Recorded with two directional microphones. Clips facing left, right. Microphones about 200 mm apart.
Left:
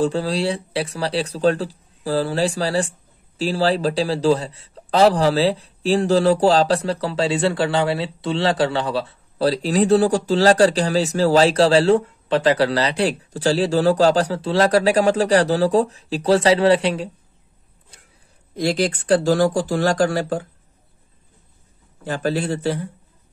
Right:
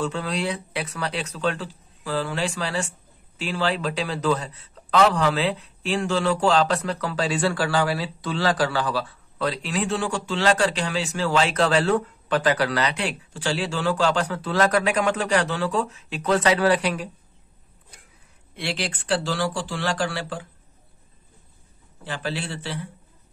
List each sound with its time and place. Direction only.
0.0 s a man's voice: 35° left (ahead or behind)
18.5 s speech: 40° left (ahead or behind)
22.0 s speech: 45° left (ahead or behind)